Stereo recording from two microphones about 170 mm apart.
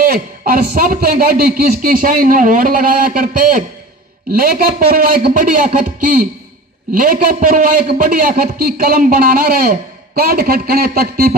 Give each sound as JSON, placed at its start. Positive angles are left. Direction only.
{"t": 0.0, "sound": "a man's voice", "side_deg": -60}
{"t": 6.9, "sound": "a man's voice", "side_deg": -55}